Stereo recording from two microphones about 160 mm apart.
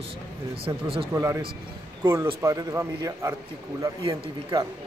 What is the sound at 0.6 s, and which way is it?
Speech, 35° right (ahead or behind).